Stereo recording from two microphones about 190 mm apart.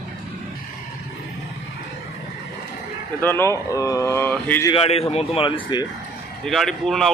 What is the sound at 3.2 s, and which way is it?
Speech, 10° left (ahead or behind).